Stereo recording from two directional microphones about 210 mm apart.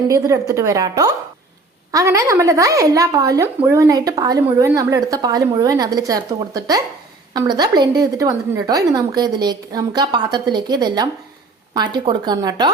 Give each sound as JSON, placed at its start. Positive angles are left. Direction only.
{"t": 0.1, "sound": "a woman's voice", "side_deg": -15}